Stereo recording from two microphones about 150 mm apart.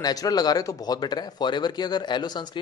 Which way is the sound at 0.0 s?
25° left (ahead or behind).